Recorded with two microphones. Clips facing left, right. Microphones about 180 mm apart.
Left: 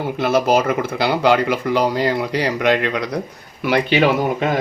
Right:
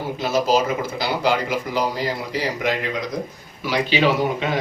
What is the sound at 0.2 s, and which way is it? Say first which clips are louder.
Speech: left 3 dB; 60° left (ahead or behind).